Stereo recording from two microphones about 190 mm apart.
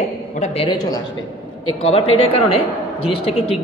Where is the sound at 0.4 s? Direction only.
30° left (ahead or behind).